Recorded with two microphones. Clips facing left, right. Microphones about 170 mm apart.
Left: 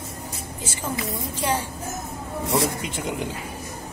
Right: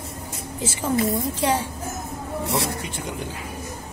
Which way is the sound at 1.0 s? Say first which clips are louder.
Right 6 dB; 25° right (ahead or behind).